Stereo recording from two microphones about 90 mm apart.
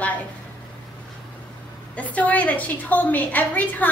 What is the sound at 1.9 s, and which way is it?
A woman's voice, 15° left (ahead or behind).